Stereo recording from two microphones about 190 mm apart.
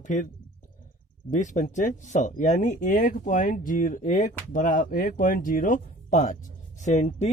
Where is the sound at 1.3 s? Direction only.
40° left (ahead or behind).